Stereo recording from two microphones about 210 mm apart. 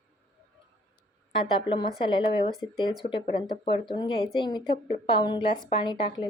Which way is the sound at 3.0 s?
35° left (ahead or behind).